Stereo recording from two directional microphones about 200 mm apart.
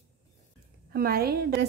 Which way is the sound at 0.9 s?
50° right (ahead or behind).